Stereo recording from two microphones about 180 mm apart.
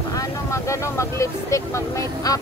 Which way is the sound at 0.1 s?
15° left (ahead or behind).